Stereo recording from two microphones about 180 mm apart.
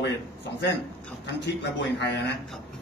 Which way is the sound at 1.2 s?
75° left (ahead or behind).